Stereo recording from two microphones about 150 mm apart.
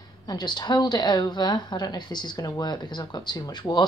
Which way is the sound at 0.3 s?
30° left (ahead or behind).